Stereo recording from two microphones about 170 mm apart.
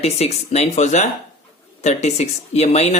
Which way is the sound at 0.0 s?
40° left (ahead or behind).